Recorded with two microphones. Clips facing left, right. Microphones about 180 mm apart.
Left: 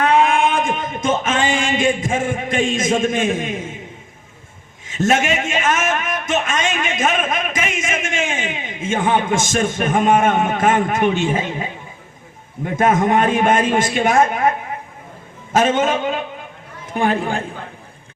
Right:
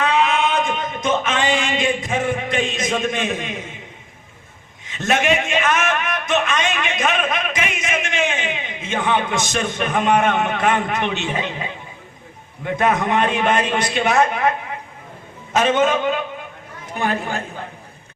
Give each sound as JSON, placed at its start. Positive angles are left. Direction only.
{"t": 0.0, "sound": "a sound", "side_deg": 50}
{"t": 4.9, "sound": "a man's voice", "side_deg": 45}
{"t": 15.5, "sound": "a man's voice", "side_deg": 50}